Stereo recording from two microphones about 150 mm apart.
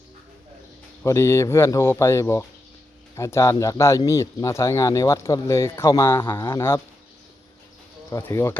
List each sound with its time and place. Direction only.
1.0 s speech: 20° left (ahead or behind)
8.1 s speech: 15° left (ahead or behind)